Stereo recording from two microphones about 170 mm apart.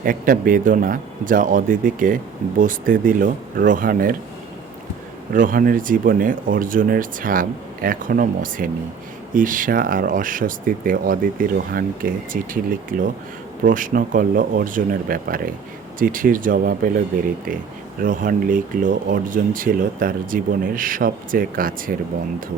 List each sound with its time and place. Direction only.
0.0 s speech: 55° right (ahead or behind)
5.3 s speech: 55° right (ahead or behind)
18.0 s speech: 55° right (ahead or behind)